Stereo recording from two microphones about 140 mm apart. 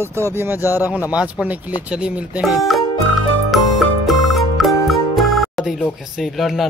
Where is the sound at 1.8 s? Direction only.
10° right (ahead or behind).